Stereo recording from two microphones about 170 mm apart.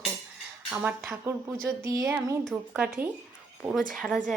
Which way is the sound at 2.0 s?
10° right (ahead or behind).